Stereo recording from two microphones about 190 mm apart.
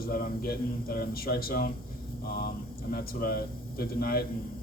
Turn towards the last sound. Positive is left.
turn(degrees=55)  # may be behind; listen again after turning